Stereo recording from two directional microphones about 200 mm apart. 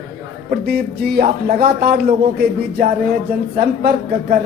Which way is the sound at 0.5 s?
50° right (ahead or behind).